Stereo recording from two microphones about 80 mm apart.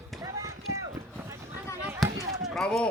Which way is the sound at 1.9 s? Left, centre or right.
Right.